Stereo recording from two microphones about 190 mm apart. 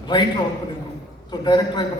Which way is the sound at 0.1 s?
20° left (ahead or behind).